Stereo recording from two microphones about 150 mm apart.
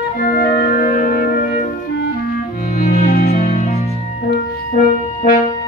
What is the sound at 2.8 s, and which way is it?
Music, 65° left (ahead or behind).